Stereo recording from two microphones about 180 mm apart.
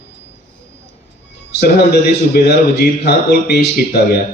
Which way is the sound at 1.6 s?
65° left (ahead or behind).